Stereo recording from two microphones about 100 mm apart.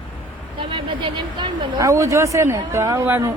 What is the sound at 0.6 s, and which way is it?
Speech, 60° right (ahead or behind).